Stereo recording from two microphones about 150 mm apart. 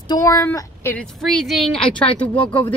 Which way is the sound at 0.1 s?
20° left (ahead or behind).